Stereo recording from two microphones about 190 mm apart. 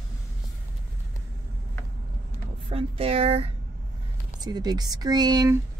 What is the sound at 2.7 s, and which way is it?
Speech, 30° right (ahead or behind).